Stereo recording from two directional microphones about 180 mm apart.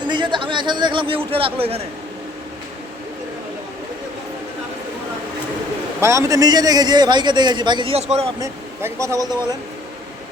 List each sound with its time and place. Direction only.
0.0 s a man's voice: 25° right (ahead or behind)
6.0 s a man's voice: 15° right (ahead or behind); by 8.3 s 35° right (ahead or behind)
8.4 s a man's voice: 15° right (ahead or behind)